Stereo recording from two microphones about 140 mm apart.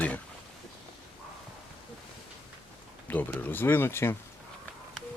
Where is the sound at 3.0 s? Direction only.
10° left (ahead or behind).